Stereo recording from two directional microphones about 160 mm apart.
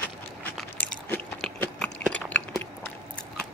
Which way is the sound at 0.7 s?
10° left (ahead or behind).